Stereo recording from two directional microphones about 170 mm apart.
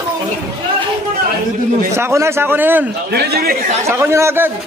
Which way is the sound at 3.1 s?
70° right (ahead or behind).